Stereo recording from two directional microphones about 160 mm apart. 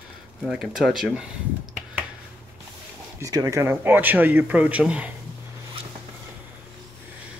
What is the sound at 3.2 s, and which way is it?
Speech, 20° right (ahead or behind).